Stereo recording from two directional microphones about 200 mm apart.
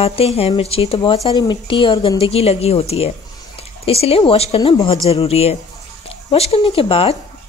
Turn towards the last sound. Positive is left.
turn(degrees=25)  # may be behind; listen again after turning